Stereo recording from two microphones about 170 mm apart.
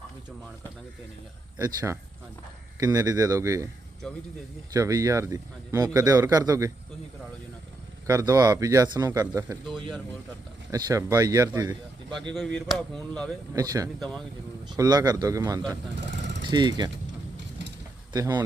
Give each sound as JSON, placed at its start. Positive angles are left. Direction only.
{"t": 1.5, "sound": "a man's voice", "side_deg": -20}
{"t": 4.7, "sound": "a man's voice", "side_deg": -20}
{"t": 8.0, "sound": "a man's voice", "side_deg": -20}
{"t": 10.7, "sound": "a man's voice", "side_deg": -20}
{"t": 12.5, "sound": "speech", "side_deg": 5}
{"t": 13.5, "sound": "a man's voice", "side_deg": -20}
{"t": 16.0, "sound": "vehicle", "side_deg": -90}
{"t": 16.4, "sound": "speech", "side_deg": -25}
{"t": 18.1, "sound": "a man's voice", "side_deg": -25}